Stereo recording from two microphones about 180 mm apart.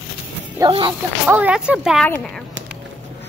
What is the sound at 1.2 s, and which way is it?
Speech, 10° right (ahead or behind).